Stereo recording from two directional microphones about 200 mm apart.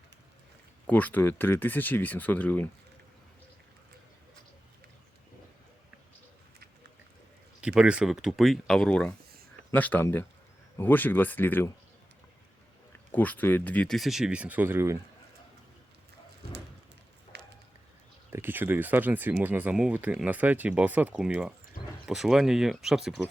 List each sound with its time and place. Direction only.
0.9 s speech: 10° left (ahead or behind)
7.6 s speech: 5° right (ahead or behind)
13.1 s speech: 10° left (ahead or behind); by 14.9 s 10° right (ahead or behind)
17.3 s a sound: 55° right (ahead or behind)
18.3 s speech: 10° right (ahead or behind)